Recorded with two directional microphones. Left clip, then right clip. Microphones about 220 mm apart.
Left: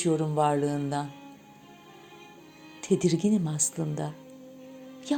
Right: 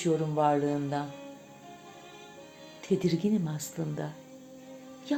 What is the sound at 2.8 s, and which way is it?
A woman's voice, 25° left (ahead or behind).